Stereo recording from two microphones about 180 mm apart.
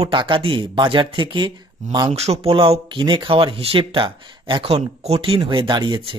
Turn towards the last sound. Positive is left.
turn(degrees=-25)  # may be behind; listen again after turning